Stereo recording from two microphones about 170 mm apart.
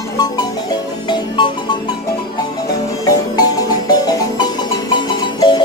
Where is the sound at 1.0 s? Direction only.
25° left (ahead or behind).